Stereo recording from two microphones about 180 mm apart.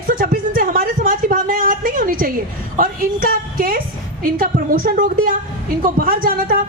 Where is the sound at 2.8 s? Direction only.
55° right (ahead or behind).